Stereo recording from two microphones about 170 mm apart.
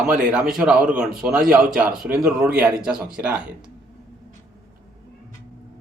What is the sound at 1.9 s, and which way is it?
Speech, 60° right (ahead or behind).